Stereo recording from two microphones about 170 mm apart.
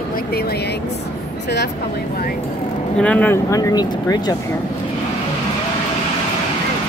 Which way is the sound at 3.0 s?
10° left (ahead or behind).